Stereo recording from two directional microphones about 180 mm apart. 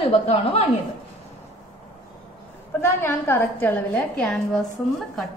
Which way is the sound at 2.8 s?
15° left (ahead or behind).